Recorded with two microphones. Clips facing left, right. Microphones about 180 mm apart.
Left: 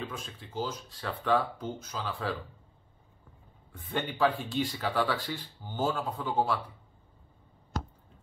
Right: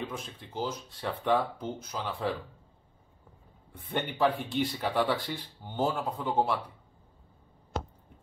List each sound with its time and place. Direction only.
0.4 s speech: 20° right (ahead or behind)
3.9 s speech: 15° right (ahead or behind)